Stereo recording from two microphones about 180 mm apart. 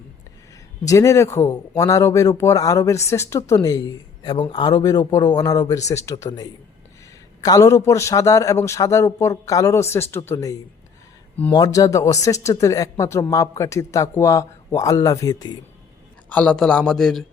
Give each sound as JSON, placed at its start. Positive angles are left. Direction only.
{"t": 0.9, "sound": "speech", "side_deg": 15}
{"t": 7.4, "sound": "a man's voice", "side_deg": 20}
{"t": 16.3, "sound": "speech", "side_deg": 5}